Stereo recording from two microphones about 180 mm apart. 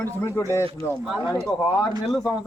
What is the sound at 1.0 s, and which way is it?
Speech, centre (ahead or behind).